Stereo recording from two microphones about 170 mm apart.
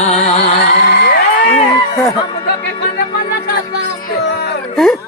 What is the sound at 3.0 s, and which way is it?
Music, 65° left (ahead or behind).